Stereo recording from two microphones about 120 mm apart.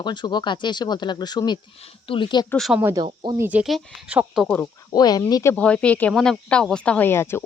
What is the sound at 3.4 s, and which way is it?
Speech, 15° right (ahead or behind).